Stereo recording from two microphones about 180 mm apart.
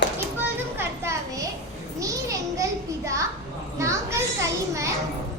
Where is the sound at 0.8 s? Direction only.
15° right (ahead or behind).